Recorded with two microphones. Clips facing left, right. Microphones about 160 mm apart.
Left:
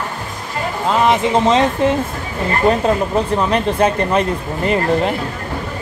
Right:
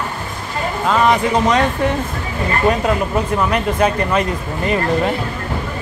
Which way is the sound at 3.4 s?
25° left (ahead or behind).